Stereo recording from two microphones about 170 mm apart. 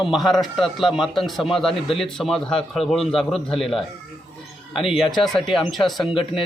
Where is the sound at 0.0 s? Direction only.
Centre (ahead or behind).